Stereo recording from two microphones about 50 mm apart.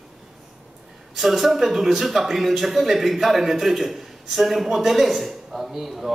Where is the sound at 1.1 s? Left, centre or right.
Centre.